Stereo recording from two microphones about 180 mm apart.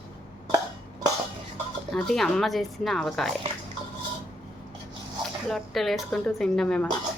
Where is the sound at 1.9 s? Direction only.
Centre (ahead or behind).